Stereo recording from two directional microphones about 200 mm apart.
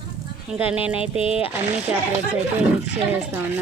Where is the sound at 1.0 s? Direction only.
30° left (ahead or behind).